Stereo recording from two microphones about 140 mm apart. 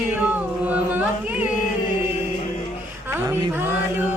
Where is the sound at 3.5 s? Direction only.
15° right (ahead or behind).